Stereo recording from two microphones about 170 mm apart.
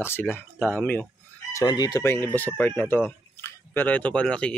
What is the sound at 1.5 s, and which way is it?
Speech, 20° left (ahead or behind).